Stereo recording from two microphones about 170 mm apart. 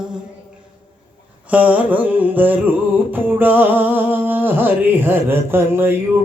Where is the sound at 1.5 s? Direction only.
10° right (ahead or behind).